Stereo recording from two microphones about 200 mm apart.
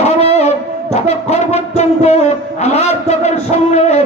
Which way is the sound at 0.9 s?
35° left (ahead or behind).